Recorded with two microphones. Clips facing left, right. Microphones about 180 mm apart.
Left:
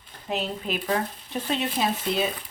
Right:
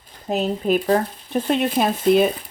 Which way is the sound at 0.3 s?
40° right (ahead or behind).